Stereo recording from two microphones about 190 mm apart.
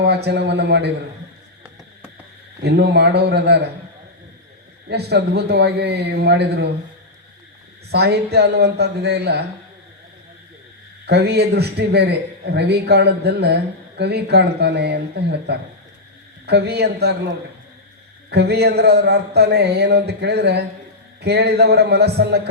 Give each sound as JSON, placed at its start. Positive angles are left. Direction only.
{"t": 0.0, "sound": "a man's voice", "side_deg": -60}
{"t": 2.6, "sound": "a man's voice", "side_deg": -60}
{"t": 4.9, "sound": "a man's voice", "side_deg": -60}
{"t": 7.9, "sound": "a man's voice", "side_deg": -60}
{"t": 11.0, "sound": "a man's voice", "side_deg": -60}
{"t": 18.3, "sound": "a man's voice", "side_deg": -60}